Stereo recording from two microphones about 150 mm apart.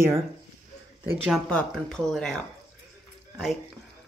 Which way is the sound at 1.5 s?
5° left (ahead or behind).